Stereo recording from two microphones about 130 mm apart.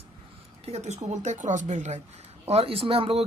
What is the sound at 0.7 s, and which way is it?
Speech, 60° right (ahead or behind).